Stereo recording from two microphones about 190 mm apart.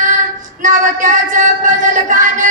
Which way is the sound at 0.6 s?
45° right (ahead or behind).